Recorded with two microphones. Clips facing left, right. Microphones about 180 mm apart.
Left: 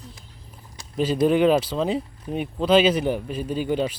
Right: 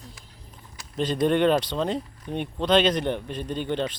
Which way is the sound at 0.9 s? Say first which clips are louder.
Left 3 dB; 5° left (ahead or behind).